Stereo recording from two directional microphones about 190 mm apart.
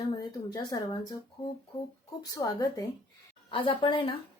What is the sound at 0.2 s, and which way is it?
Speech, 20° left (ahead or behind).